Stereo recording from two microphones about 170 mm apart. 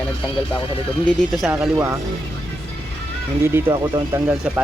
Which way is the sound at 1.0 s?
Centre (ahead or behind).